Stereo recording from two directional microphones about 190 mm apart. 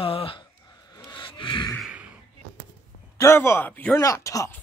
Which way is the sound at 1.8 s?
5° right (ahead or behind).